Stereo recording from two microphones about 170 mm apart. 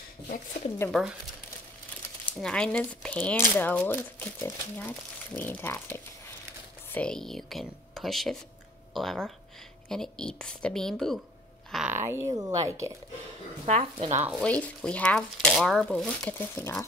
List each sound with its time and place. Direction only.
0.8 s speech: centre (ahead or behind)
2.4 s speech: 5° left (ahead or behind)
11.9 s speech: 15° right (ahead or behind)
13.7 s speech: 35° right (ahead or behind)
14.4 s speech: 5° left (ahead or behind)